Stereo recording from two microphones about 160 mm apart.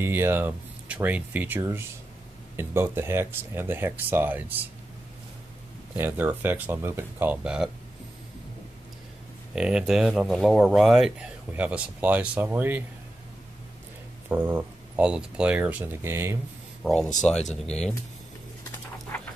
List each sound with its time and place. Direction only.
0.0 s speech: 15° right (ahead or behind)
5.9 s speech: 10° right (ahead or behind)
9.6 s speech: 5° right (ahead or behind)
14.3 s speech: 10° right (ahead or behind)
16.8 s speech: 5° left (ahead or behind)
19.1 s a sound: 15° left (ahead or behind)